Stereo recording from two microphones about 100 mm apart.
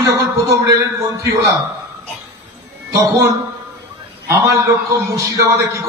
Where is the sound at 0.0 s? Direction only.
35° right (ahead or behind).